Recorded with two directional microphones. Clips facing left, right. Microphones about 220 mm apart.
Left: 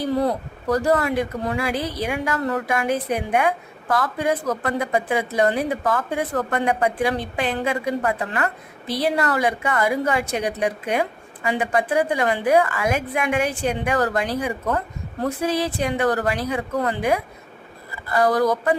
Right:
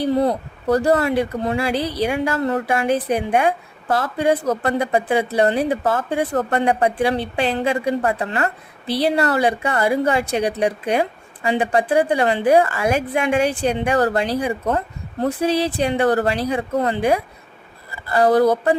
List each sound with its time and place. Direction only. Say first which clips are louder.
0.7 s a woman's voice: right 3 dB; 30° right (ahead or behind)